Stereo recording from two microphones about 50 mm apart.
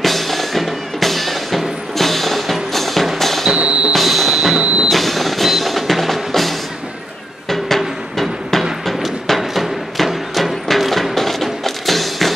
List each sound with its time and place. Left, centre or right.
0.0 s music: centre
3.5 s music: right
3.9 s music: centre
4.6 s train: right
4.8 s music: centre